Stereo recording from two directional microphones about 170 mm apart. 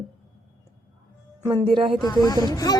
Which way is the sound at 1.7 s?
30° right (ahead or behind).